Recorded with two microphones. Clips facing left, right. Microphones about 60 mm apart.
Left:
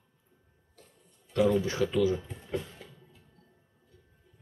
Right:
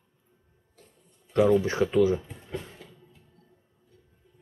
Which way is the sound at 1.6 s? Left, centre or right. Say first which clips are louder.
Right 4 dB; right.